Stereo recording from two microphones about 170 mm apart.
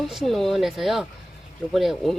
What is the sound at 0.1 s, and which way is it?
Speech, centre (ahead or behind).